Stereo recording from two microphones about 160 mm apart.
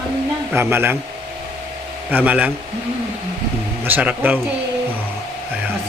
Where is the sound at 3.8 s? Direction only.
10° right (ahead or behind).